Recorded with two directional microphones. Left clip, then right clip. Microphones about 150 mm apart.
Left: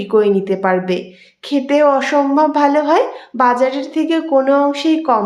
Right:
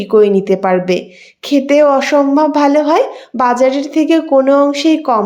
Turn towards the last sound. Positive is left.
turn(degrees=-30)  # may be behind; listen again after turning